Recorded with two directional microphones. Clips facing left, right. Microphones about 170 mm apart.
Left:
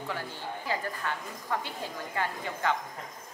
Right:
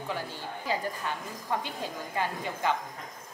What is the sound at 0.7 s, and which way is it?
A woman's voice, 15° right (ahead or behind).